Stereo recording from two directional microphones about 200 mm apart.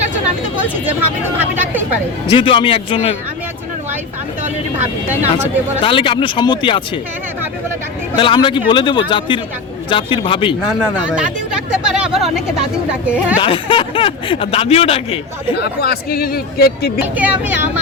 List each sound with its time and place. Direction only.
1.4 s speech: 10° right (ahead or behind)
2.3 s speech: 25° left (ahead or behind)
5.0 s speech: 10° right (ahead or behind)
5.8 s speech: 25° left (ahead or behind)
8.1 s speech: 25° left (ahead or behind)
10.8 s a sound: 5° right (ahead or behind)
12.9 s speech: 5° right (ahead or behind)
13.4 s speech: 25° left (ahead or behind)
15.5 s speech: 50° left (ahead or behind)
17.2 s speech: 10° right (ahead or behind)